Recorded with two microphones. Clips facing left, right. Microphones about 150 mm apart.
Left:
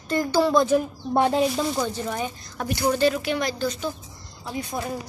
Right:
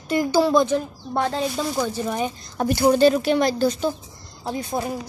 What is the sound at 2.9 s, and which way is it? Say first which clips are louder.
Speech: right 5 dB; 35° right (ahead or behind).